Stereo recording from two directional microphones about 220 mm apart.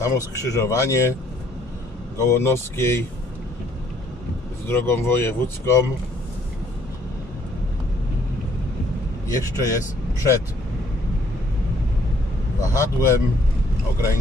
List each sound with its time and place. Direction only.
0.0 s speech: 15° left (ahead or behind)
2.1 s speech: 10° left (ahead or behind)
4.6 s speech: 10° left (ahead or behind)
9.3 s speech: 15° left (ahead or behind)
12.7 s a sound: 15° left (ahead or behind)